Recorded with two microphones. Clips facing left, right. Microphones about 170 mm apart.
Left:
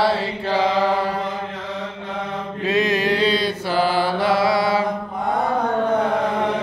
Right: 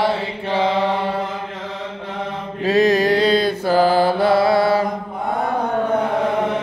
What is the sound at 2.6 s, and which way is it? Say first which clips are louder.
Mantra: right 5 dB; 40° right (ahead or behind).